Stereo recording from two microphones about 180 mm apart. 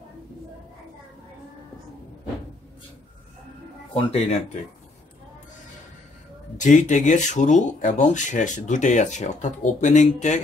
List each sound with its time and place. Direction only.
3.9 s speech: 35° left (ahead or behind)
6.6 s speech: 45° left (ahead or behind)